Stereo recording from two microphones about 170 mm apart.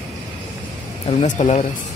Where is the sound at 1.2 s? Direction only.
40° left (ahead or behind).